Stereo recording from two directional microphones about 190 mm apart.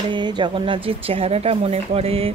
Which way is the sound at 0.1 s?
25° right (ahead or behind).